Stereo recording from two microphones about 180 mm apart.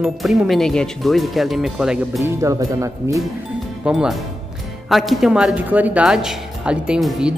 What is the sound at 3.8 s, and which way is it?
Speech, 5° right (ahead or behind).